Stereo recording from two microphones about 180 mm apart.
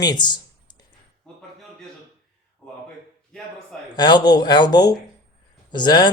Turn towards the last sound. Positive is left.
turn(degrees=25)  # may be behind; listen again after turning